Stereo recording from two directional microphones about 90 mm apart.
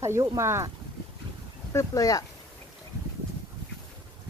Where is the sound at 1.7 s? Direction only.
35° left (ahead or behind).